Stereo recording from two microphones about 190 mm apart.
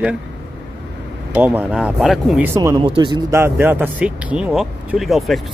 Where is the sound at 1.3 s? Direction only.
10° right (ahead or behind).